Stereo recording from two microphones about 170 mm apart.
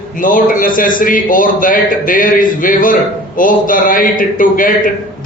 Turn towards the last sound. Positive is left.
turn(degrees=55)  # may be behind; listen again after turning